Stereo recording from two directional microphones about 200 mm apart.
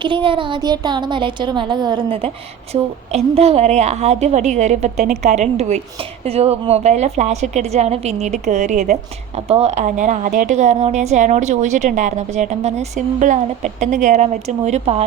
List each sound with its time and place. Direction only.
0.0 s a woman's voice: 25° right (ahead or behind)